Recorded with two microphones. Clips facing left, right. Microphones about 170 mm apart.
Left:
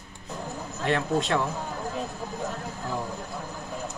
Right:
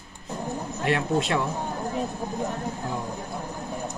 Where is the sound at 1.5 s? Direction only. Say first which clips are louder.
Right 3 dB; 20° right (ahead or behind).